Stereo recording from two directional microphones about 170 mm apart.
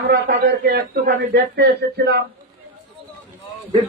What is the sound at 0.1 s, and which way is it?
A man's voice, 80° right.